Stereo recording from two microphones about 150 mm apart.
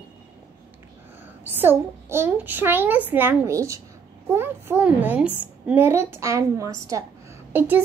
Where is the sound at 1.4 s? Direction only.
15° right (ahead or behind).